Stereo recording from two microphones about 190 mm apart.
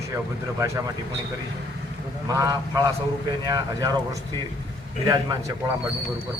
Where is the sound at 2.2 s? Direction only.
20° right (ahead or behind).